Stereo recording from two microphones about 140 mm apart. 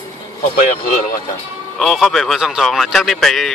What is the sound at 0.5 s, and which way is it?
Speech, 70° left (ahead or behind).